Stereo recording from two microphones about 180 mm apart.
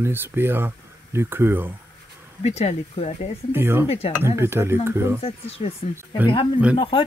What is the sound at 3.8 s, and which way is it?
Speech, 35° left (ahead or behind).